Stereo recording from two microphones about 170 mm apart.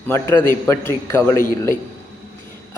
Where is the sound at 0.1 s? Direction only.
15° left (ahead or behind).